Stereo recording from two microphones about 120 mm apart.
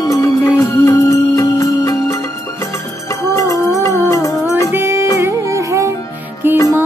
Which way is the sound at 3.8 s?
25° left (ahead or behind).